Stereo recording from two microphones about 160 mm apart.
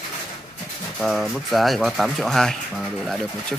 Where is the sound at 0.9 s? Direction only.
Centre (ahead or behind).